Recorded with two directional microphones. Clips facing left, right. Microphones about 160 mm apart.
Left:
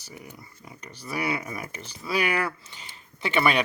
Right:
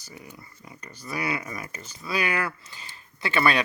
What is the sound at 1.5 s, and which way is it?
Speech, 25° left (ahead or behind).